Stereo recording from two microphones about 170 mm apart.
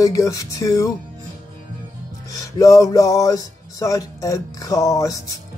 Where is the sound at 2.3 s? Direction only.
20° left (ahead or behind).